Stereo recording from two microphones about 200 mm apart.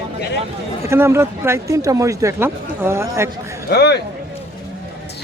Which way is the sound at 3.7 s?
55° left (ahead or behind).